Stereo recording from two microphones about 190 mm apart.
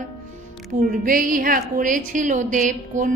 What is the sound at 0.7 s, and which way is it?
A woman's voice, 45° right (ahead or behind).